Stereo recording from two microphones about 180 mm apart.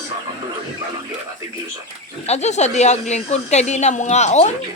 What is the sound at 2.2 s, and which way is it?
Speech, 40° left (ahead or behind).